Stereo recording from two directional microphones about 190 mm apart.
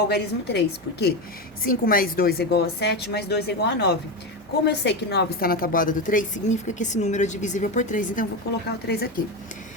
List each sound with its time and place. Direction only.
0.1 s a woman's voice: 60° left (ahead or behind)
8.9 s a woman's voice: 55° left (ahead or behind)